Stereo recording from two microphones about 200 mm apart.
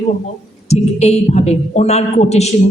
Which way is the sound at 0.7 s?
30° left (ahead or behind).